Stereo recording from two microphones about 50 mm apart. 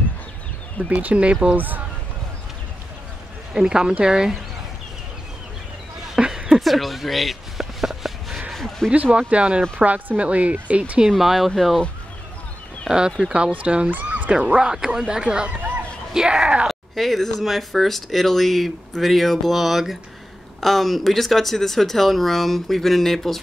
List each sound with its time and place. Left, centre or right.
0.8 s speech: right
3.5 s speech: centre
6.1 s a sound: centre
6.6 s a sound: centre
8.5 s a sound: centre
8.9 s speech: right
11.1 s speech: centre
12.8 s speech: centre
14.0 s dog: right
14.6 s speech: centre
16.6 s speech: centre